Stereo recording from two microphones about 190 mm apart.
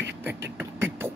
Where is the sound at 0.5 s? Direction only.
10° right (ahead or behind).